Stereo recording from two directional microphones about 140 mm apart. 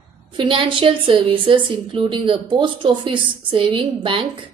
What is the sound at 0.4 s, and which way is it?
A woman's voice, 35° right (ahead or behind).